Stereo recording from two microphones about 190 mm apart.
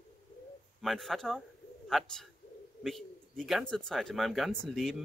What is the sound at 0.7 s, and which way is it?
Speech, centre (ahead or behind).